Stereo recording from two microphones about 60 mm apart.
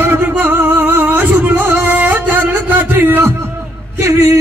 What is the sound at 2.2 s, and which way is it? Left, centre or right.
Music, right.